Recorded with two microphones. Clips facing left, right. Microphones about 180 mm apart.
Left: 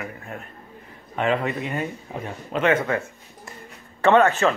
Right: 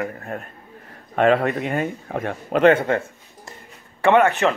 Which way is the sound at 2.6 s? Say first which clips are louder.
Right 5 dB; 30° right (ahead or behind).